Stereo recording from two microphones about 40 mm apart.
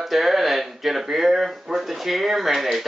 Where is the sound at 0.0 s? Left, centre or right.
Centre.